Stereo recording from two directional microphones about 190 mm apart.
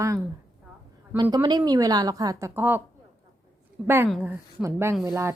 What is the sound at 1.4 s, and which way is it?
A woman's voice, 20° right (ahead or behind).